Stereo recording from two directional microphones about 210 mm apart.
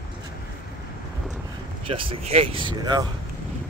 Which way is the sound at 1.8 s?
25° right (ahead or behind).